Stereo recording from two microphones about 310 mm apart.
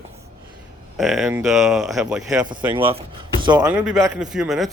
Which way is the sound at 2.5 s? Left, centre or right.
Centre.